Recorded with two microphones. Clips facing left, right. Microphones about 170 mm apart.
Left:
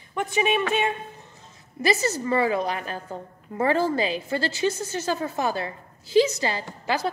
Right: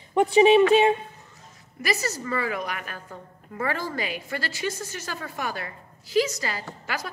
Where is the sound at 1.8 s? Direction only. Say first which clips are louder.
Left 5 dB; 25° left (ahead or behind).